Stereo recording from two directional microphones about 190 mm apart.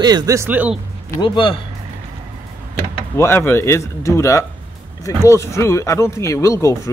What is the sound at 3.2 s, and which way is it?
Speech, 15° left (ahead or behind).